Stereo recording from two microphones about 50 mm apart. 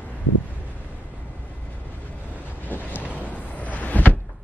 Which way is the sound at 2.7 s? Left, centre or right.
Left.